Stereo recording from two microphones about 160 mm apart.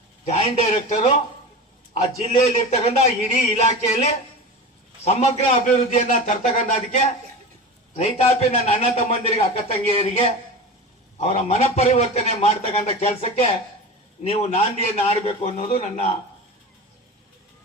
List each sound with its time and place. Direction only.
0.3 s a man's voice: 45° left (ahead or behind)
6.1 s a man's voice: 50° left (ahead or behind)